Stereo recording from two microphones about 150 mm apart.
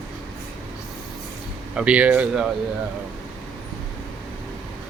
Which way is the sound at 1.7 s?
5° right (ahead or behind).